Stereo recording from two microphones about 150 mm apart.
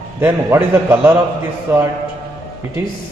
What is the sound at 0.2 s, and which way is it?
A man's voice, 15° right (ahead or behind).